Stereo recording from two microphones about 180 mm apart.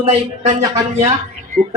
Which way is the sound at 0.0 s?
35° right (ahead or behind).